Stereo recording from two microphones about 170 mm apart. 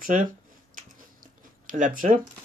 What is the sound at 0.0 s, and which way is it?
Speech, 50° right (ahead or behind).